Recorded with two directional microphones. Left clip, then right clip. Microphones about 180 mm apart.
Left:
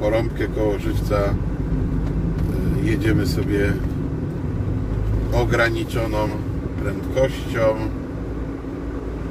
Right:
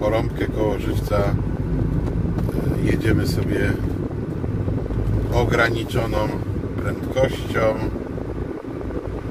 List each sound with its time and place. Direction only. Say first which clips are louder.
0.0 s speech: even; 15° right (ahead or behind)
2.8 s speech: left 1 dB; 15° right (ahead or behind)
5.3 s speech: even; 15° right (ahead or behind)